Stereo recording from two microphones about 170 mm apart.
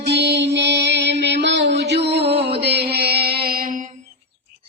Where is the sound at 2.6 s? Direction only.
70° right (ahead or behind).